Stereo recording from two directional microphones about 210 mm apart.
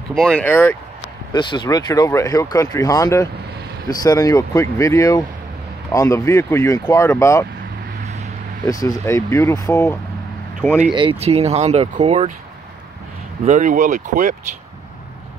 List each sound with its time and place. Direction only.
0.1 s speech: 5° left (ahead or behind)
1.3 s speech: 20° left (ahead or behind)
8.6 s speech: 15° left (ahead or behind)
10.9 s speech: 25° right (ahead or behind)
13.5 s speech: 35° right (ahead or behind)